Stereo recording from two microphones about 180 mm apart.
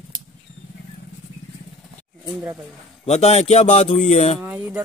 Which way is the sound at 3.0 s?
35° left (ahead or behind).